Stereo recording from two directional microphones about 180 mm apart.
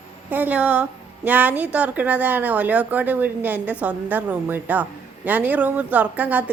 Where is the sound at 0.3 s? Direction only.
10° right (ahead or behind).